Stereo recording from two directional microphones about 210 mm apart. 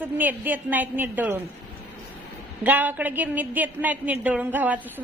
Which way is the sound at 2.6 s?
10° right (ahead or behind).